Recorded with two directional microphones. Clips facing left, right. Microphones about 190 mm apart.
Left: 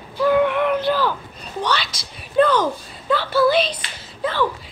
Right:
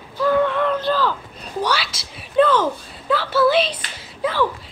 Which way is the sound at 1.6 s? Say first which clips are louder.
Right 1 dB; 5° right (ahead or behind).